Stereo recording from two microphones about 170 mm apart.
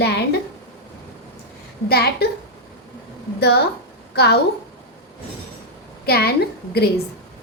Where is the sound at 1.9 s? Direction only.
70° left (ahead or behind).